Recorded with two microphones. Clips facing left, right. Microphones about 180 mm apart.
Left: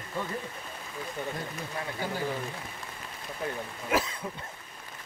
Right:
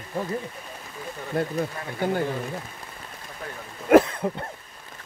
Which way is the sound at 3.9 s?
55° right (ahead or behind).